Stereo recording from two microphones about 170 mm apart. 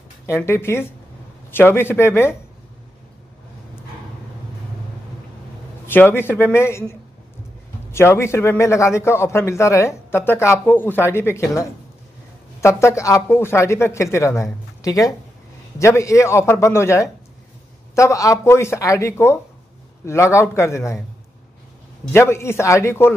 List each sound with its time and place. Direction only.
0.3 s a man's voice: 15° left (ahead or behind)
5.9 s a man's voice: 10° left (ahead or behind)
7.9 s a man's voice: 15° left (ahead or behind)
22.1 s a man's voice: 15° left (ahead or behind)